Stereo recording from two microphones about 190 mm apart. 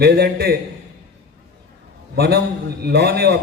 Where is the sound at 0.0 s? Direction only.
55° right (ahead or behind).